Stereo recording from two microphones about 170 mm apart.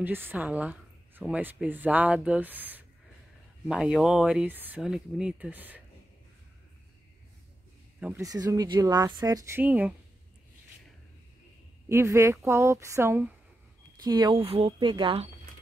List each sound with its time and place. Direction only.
0.0 s speech: 10° right (ahead or behind)
8.0 s speech: 15° right (ahead or behind)
9.6 s speech: 10° right (ahead or behind)
11.9 s speech: 15° right (ahead or behind)